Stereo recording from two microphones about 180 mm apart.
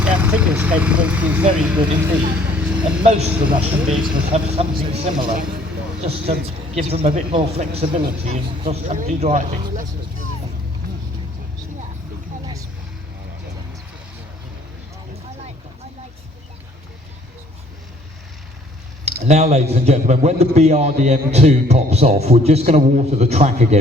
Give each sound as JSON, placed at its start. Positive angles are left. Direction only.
{"t": 0.0, "sound": "speech", "side_deg": -10}
{"t": 3.0, "sound": "a man's voice", "side_deg": -35}
{"t": 3.8, "sound": "speech", "side_deg": -5}
{"t": 4.3, "sound": "a man's voice", "side_deg": -35}
{"t": 19.0, "sound": "a man's voice", "side_deg": -35}